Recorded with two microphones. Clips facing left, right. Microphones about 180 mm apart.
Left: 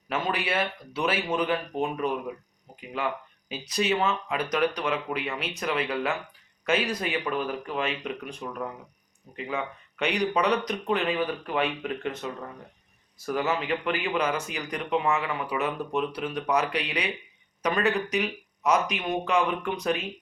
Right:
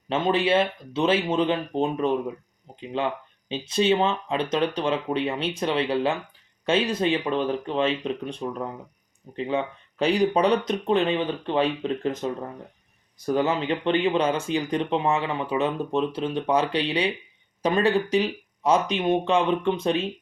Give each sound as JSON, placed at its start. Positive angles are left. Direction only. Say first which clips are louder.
{"t": 0.1, "sound": "speech", "louder": "right 7 dB", "side_deg": -25}